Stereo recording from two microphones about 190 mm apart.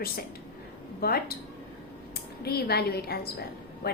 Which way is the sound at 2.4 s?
55° left (ahead or behind).